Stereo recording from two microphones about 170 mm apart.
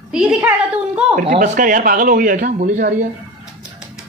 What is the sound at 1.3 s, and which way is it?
A man's voice, 50° right (ahead or behind).